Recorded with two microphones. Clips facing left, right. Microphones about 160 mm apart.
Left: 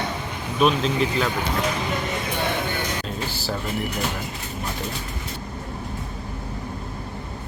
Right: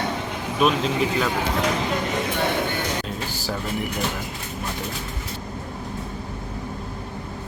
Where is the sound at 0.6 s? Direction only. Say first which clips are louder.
Left 1 dB; centre (ahead or behind).